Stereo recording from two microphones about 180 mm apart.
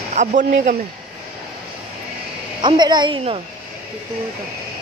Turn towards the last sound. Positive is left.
turn(degrees=-25)  # may be behind; listen again after turning